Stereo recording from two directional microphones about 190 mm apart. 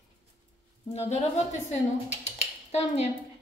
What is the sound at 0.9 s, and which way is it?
Speech, 35° left (ahead or behind).